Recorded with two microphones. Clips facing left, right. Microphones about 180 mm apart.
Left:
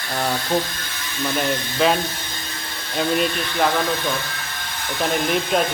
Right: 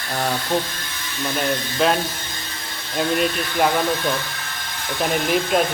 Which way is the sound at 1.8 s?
Centre (ahead or behind).